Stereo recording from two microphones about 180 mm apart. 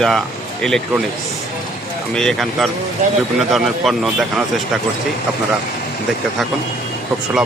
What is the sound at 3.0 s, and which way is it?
Speech, 40° right (ahead or behind).